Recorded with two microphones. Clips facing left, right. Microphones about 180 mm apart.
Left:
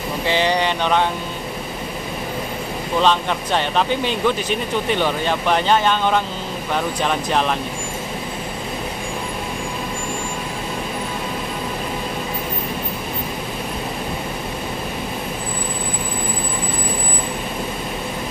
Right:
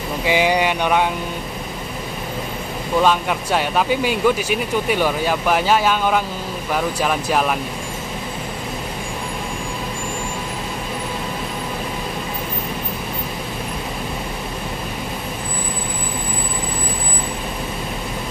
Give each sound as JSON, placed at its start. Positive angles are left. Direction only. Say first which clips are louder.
{"t": 0.2, "sound": "speech", "louder": "right 2 dB", "side_deg": -10}
{"t": 3.0, "sound": "speech", "louder": "right 1 dB", "side_deg": -5}